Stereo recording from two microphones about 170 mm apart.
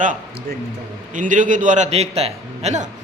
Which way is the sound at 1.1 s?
50° right (ahead or behind).